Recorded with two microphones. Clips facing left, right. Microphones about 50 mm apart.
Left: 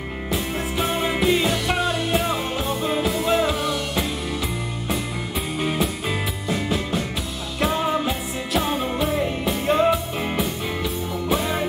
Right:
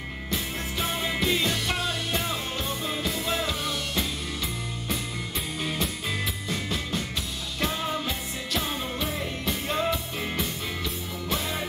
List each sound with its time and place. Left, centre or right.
0.3 s music: centre
6.0 s music: centre